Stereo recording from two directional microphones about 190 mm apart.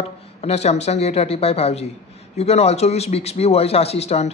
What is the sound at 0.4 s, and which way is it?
A man's voice, 35° left (ahead or behind).